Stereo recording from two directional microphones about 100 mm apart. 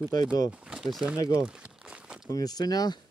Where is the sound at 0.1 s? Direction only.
40° left (ahead or behind).